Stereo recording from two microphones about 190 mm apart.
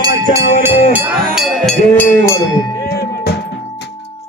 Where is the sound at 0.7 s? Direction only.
35° left (ahead or behind).